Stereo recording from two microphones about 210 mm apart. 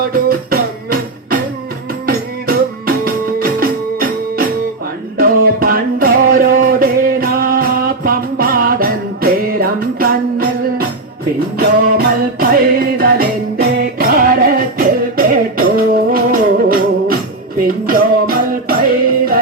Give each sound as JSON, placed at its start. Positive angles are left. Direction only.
{"t": 0.1, "sound": "music", "side_deg": -45}